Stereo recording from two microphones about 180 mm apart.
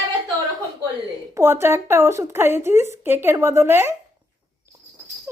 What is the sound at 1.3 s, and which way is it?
Speech, 15° right (ahead or behind).